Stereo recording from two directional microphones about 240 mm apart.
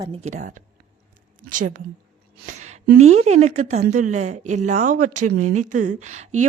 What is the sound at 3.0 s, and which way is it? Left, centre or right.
A woman's voice, right.